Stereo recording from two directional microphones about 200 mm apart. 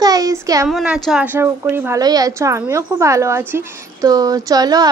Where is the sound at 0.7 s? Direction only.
Centre (ahead or behind).